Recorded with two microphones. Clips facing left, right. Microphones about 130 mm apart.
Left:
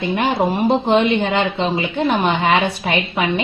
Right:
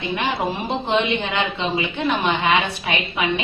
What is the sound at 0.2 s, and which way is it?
Speech, 45° left (ahead or behind).